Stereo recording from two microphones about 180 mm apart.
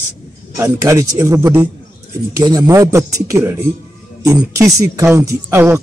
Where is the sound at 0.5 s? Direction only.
15° right (ahead or behind).